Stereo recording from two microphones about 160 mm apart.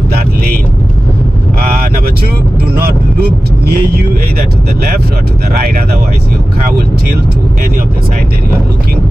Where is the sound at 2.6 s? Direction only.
75° right (ahead or behind).